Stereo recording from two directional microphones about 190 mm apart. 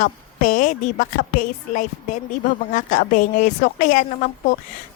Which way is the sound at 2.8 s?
40° left (ahead or behind).